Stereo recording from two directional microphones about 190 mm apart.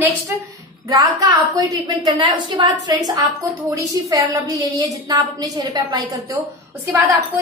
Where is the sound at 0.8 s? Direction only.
20° right (ahead or behind).